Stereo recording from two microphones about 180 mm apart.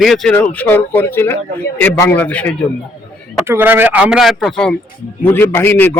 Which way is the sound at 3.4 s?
10° right (ahead or behind).